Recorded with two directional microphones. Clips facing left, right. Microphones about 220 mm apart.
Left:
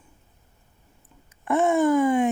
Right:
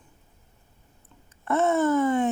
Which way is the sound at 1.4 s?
15° left (ahead or behind).